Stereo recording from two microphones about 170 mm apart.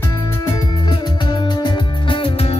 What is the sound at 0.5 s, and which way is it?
Music, 25° left (ahead or behind).